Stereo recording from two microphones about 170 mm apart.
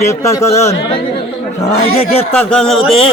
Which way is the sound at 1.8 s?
35° left (ahead or behind).